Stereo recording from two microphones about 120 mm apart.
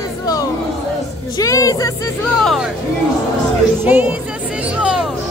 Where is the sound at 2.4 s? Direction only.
Centre (ahead or behind).